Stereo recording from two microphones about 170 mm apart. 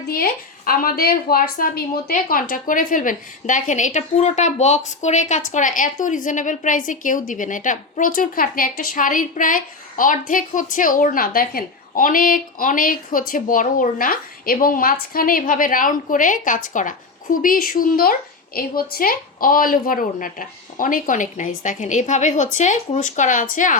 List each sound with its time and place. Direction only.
0.1 s a woman's voice: 60° left (ahead or behind)